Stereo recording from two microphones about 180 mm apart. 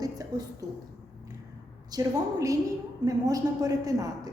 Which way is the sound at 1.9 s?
20° right (ahead or behind).